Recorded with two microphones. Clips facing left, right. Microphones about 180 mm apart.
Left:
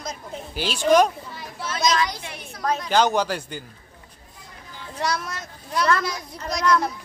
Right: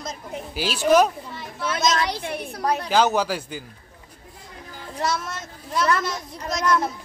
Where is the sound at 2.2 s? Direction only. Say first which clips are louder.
Right 8 dB; 55° right (ahead or behind).